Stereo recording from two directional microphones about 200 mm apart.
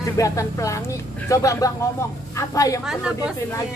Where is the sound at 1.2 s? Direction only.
15° left (ahead or behind).